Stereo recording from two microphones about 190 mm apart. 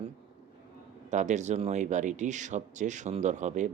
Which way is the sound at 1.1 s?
40° right (ahead or behind).